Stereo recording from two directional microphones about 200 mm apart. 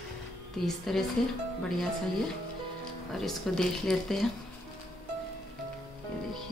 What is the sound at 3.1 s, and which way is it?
A woman's voice, centre (ahead or behind).